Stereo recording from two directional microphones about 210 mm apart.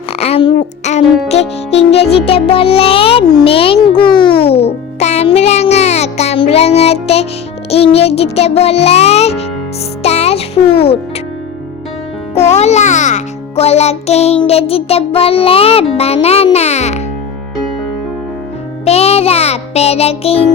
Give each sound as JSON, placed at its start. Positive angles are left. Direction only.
{"t": 0.2, "sound": "a sound", "side_deg": 30}
{"t": 1.3, "sound": "music", "side_deg": 30}
{"t": 10.6, "sound": "speech", "side_deg": 50}
{"t": 12.3, "sound": "a child's voice", "side_deg": 30}
{"t": 14.4, "sound": "music", "side_deg": 30}
{"t": 18.9, "sound": "music", "side_deg": 30}